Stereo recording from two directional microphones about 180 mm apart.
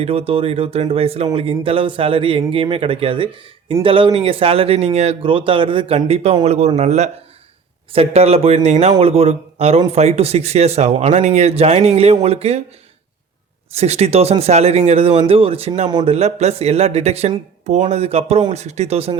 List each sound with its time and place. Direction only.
0.0 s speech: 30° right (ahead or behind)
13.7 s speech: 35° right (ahead or behind)
15.9 s a man's voice: 25° right (ahead or behind)
16.1 s speech: 35° right (ahead or behind)